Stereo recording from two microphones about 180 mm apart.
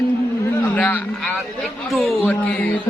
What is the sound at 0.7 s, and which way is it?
Music, 10° left (ahead or behind).